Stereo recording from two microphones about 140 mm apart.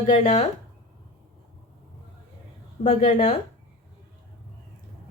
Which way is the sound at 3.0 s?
75° left (ahead or behind).